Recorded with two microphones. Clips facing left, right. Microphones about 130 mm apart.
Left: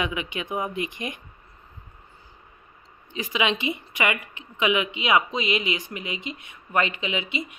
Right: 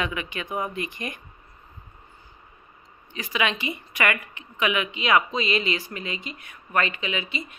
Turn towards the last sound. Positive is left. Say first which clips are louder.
# left 2 dB
turn(degrees=20)  # may be behind; listen again after turning